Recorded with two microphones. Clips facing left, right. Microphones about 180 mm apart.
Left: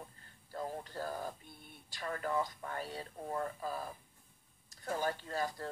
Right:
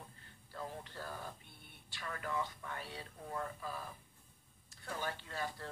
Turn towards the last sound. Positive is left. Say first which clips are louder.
# left 5 dB
turn(degrees=40)  # may be behind; listen again after turning